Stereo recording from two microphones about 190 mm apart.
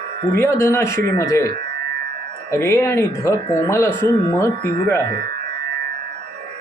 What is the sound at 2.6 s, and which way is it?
Speech, 15° left (ahead or behind).